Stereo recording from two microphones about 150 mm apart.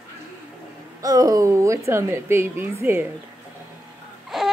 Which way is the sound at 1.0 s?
25° right (ahead or behind).